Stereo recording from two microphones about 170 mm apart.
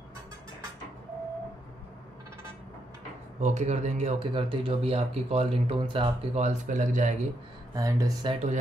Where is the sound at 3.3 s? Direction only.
45° right (ahead or behind).